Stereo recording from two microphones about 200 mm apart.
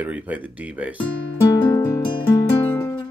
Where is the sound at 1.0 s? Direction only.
15° left (ahead or behind).